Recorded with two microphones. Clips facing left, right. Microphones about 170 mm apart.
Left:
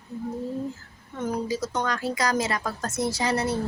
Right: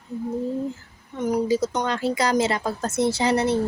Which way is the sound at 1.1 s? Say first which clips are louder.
Right 6 dB; 15° right (ahead or behind).